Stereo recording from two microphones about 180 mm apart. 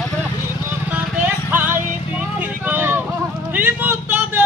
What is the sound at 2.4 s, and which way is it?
Vehicle, 10° right (ahead or behind).